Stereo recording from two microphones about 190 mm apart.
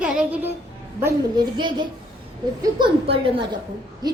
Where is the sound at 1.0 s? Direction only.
20° right (ahead or behind).